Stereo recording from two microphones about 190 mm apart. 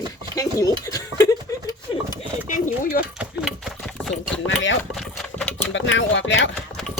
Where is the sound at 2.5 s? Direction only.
45° left (ahead or behind).